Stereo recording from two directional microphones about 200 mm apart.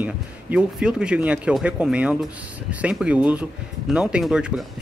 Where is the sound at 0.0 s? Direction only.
5° right (ahead or behind).